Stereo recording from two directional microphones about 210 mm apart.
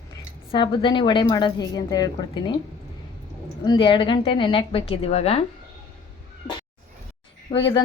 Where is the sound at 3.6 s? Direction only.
20° left (ahead or behind).